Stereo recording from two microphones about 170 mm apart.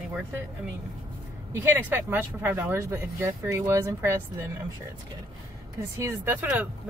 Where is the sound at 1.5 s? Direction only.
15° right (ahead or behind).